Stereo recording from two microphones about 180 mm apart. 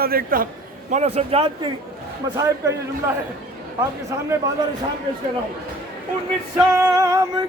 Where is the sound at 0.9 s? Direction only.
40° right (ahead or behind).